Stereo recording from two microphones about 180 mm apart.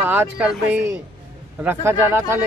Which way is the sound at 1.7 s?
15° right (ahead or behind).